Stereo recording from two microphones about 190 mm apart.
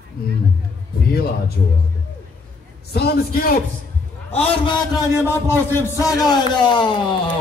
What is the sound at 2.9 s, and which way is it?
Speech, 55° left (ahead or behind).